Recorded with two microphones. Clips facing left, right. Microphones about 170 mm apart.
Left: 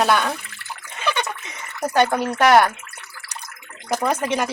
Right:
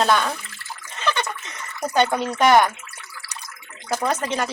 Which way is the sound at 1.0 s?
10° left (ahead or behind).